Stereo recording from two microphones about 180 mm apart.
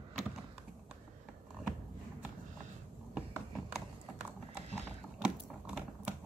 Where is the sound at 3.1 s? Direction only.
5° right (ahead or behind).